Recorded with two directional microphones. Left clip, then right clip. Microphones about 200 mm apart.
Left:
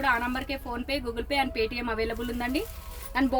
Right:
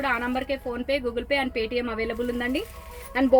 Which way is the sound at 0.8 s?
30° left (ahead or behind).